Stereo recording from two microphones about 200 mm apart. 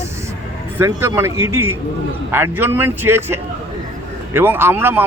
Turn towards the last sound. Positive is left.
turn(degrees=-10)  # may be behind; listen again after turning